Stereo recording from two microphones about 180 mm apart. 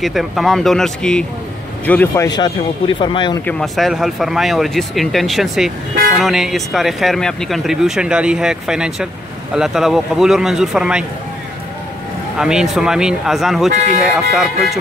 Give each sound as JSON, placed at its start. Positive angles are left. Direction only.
{"t": 0.0, "sound": "speech", "side_deg": 0}
{"t": 2.2, "sound": "speech", "side_deg": 25}
{"t": 3.4, "sound": "speech", "side_deg": 5}
{"t": 12.4, "sound": "speech", "side_deg": -5}
{"t": 13.7, "sound": "speech", "side_deg": -40}
{"t": 14.3, "sound": "speech", "side_deg": 0}